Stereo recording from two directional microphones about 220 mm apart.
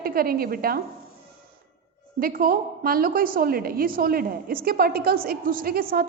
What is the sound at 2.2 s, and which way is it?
A woman's voice, 40° right (ahead or behind).